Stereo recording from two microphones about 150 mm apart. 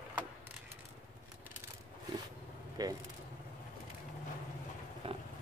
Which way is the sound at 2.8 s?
25° right (ahead or behind).